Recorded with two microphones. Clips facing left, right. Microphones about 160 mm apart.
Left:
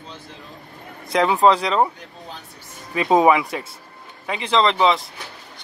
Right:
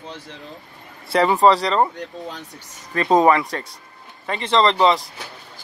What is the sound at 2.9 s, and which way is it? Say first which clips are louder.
Speech: even; 5° left (ahead or behind).